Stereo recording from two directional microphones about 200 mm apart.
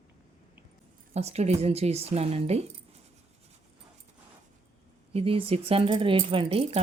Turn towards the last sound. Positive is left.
turn(degrees=-30)  # may be behind; listen again after turning